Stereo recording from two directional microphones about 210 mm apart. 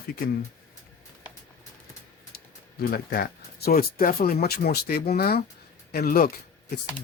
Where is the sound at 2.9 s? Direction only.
45° left (ahead or behind).